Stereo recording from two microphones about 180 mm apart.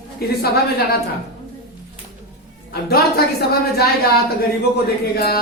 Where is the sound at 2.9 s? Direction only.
60° left (ahead or behind).